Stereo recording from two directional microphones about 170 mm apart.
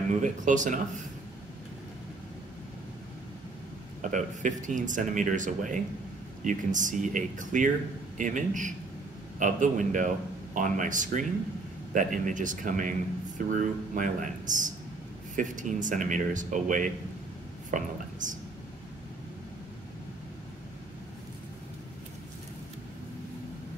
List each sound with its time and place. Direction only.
0.2 s speech: 50° right (ahead or behind)
4.0 s speech: 50° right (ahead or behind)